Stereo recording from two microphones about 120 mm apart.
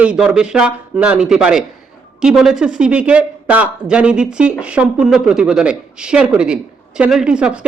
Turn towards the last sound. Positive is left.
turn(degrees=-10)  # may be behind; listen again after turning